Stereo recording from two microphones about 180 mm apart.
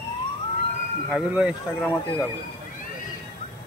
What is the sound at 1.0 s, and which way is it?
Speech, 5° right (ahead or behind).